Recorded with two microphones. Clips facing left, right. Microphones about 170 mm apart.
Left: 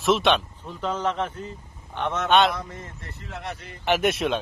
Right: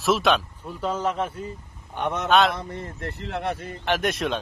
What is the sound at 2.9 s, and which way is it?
Speech, 65° right (ahead or behind).